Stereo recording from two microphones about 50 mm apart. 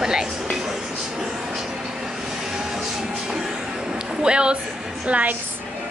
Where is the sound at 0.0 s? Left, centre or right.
Centre.